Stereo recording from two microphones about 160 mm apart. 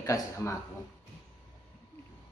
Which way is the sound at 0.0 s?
20° left (ahead or behind).